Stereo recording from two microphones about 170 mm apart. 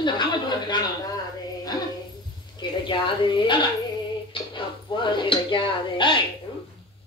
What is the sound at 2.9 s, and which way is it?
A man's voice, 30° left (ahead or behind).